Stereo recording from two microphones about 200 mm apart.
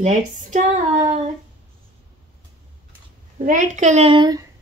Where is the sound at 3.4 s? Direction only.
40° right (ahead or behind); by 4.5 s 20° right (ahead or behind).